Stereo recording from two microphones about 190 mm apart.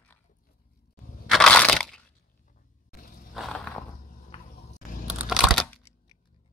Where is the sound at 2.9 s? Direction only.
50° left (ahead or behind).